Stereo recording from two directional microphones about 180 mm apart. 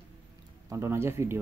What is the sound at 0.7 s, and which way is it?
Speech, 15° right (ahead or behind).